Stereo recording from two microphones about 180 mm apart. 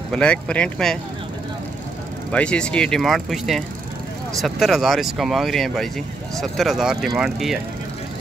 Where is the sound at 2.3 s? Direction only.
5° left (ahead or behind).